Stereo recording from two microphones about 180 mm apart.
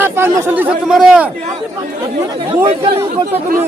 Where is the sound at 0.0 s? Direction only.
15° right (ahead or behind).